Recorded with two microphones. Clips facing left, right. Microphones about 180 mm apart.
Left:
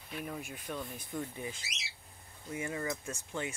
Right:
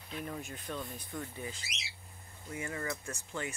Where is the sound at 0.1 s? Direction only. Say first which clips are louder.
Even; 10° left (ahead or behind).